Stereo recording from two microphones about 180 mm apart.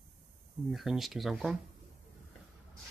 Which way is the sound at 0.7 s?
Centre (ahead or behind).